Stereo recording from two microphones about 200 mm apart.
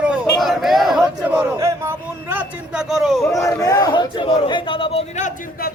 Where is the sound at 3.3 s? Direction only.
15° left (ahead or behind).